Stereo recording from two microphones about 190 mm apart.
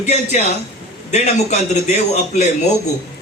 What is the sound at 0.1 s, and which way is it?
A man's voice, 35° left (ahead or behind).